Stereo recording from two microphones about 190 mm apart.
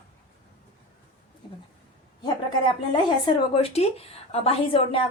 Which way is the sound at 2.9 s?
25° left (ahead or behind).